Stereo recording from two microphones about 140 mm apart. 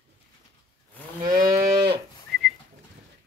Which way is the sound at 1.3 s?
90° right.